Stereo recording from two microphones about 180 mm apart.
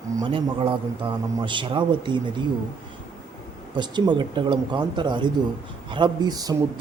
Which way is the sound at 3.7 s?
25° right (ahead or behind).